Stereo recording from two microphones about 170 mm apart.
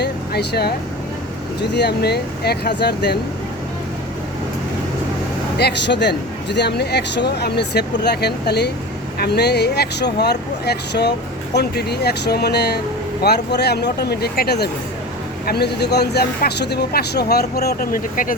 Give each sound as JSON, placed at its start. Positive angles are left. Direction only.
{"t": 0.0, "sound": "vehicle", "side_deg": 70}
{"t": 1.7, "sound": "speech", "side_deg": 75}
{"t": 5.5, "sound": "speech", "side_deg": 80}